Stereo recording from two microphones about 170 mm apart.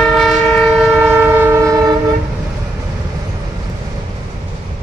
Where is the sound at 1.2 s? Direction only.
10° right (ahead or behind).